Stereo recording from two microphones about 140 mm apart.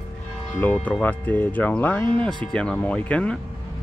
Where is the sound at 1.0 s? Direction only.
10° left (ahead or behind).